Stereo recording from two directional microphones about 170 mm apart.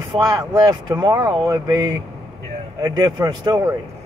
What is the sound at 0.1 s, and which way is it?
Speech, 25° right (ahead or behind).